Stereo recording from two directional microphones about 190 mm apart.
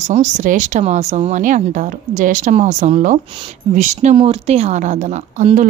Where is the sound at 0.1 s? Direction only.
40° right (ahead or behind).